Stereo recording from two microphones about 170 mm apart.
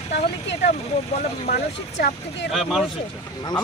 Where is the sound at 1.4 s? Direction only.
65° left (ahead or behind).